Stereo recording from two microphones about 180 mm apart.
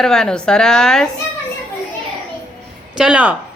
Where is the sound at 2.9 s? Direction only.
5° right (ahead or behind).